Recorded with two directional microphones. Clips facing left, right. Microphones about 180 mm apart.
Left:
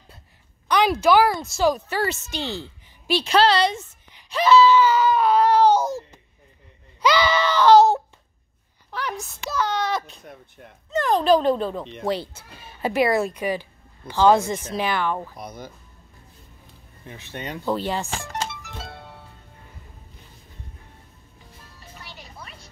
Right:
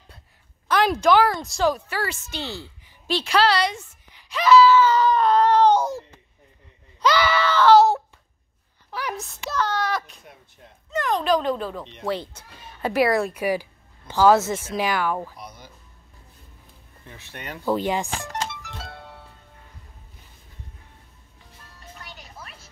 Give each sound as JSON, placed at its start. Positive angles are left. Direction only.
{"t": 0.7, "sound": "speech", "side_deg": 0}
{"t": 1.7, "sound": "speech", "side_deg": 25}
{"t": 4.9, "sound": "baby cry", "side_deg": 5}
{"t": 7.0, "sound": "wail", "side_deg": 15}
{"t": 8.9, "sound": "a woman's voice", "side_deg": -5}
{"t": 9.7, "sound": "a sound", "side_deg": 20}
{"t": 10.9, "sound": "speech", "side_deg": 30}
{"t": 12.1, "sound": "speech", "side_deg": 5}
{"t": 15.3, "sound": "speech", "side_deg": 50}
{"t": 17.1, "sound": "speech", "side_deg": 20}
{"t": 17.6, "sound": "speech", "side_deg": -15}
{"t": 18.8, "sound": "music", "side_deg": 20}
{"t": 21.7, "sound": "music", "side_deg": 5}